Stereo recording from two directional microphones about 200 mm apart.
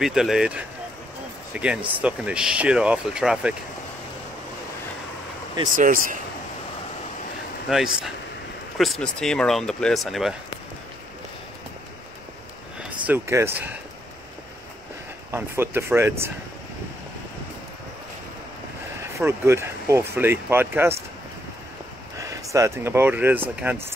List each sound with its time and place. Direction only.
0.0 s speech: centre (ahead or behind)
5.8 s speech: 45° right (ahead or behind)
7.7 s speech: centre (ahead or behind)
13.0 s speech: 10° right (ahead or behind)
15.3 s speech: 10° right (ahead or behind)
19.1 s speech: 15° right (ahead or behind)
22.1 s speech: 15° right (ahead or behind)